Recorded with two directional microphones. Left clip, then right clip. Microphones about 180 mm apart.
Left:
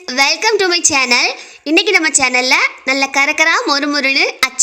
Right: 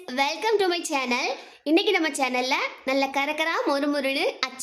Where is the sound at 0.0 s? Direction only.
20° left (ahead or behind).